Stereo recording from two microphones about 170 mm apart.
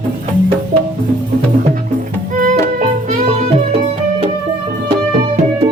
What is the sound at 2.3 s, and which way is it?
Music, 50° right (ahead or behind).